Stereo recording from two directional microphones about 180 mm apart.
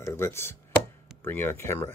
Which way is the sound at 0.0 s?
15° left (ahead or behind).